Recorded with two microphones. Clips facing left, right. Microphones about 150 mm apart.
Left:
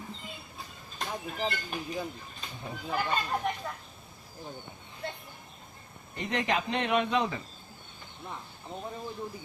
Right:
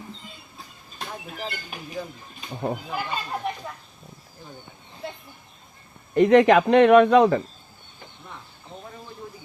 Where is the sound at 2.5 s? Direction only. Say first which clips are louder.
Right 15 dB; 60° right (ahead or behind).